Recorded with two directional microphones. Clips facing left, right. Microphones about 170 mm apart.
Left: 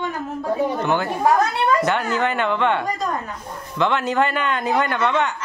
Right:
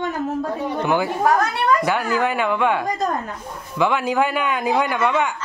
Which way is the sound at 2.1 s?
10° right (ahead or behind).